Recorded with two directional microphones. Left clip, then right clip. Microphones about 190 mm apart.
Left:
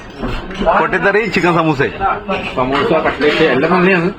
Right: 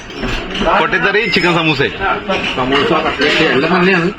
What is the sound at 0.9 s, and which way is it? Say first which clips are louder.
Speech: right 1 dB; 25° left (ahead or behind).